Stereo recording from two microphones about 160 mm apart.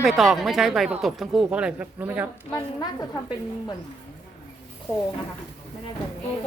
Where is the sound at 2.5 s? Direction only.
20° left (ahead or behind).